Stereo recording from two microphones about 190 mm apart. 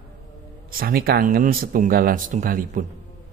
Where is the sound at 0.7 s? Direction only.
50° right (ahead or behind).